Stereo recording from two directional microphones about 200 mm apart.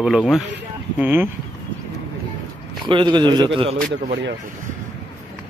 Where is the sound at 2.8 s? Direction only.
25° right (ahead or behind).